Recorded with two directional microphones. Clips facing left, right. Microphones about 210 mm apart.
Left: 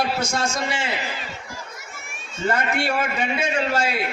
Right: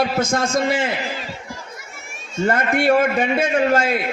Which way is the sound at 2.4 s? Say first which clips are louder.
Right 5 dB; 50° right (ahead or behind).